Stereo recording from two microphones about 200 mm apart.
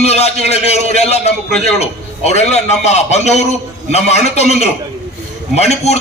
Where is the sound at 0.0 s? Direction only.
30° left (ahead or behind).